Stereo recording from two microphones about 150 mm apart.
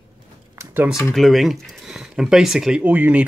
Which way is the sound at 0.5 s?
15° right (ahead or behind).